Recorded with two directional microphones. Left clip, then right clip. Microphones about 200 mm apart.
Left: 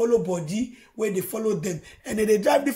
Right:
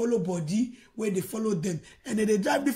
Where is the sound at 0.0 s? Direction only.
Centre (ahead or behind).